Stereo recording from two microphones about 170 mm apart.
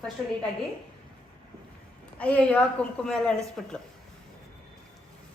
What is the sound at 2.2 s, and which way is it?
A woman's voice, 10° left (ahead or behind).